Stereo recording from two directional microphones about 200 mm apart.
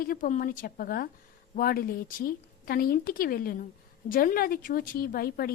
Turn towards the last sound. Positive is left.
turn(degrees=50)  # may be behind; listen again after turning